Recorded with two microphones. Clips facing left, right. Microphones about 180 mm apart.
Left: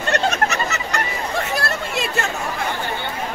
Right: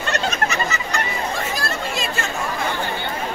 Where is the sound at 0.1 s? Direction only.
65° left (ahead or behind).